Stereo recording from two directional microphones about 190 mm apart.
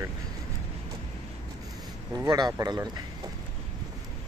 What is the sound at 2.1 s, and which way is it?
Speech, 20° right (ahead or behind).